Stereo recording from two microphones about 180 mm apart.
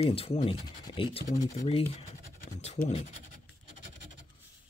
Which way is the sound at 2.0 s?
40° left (ahead or behind).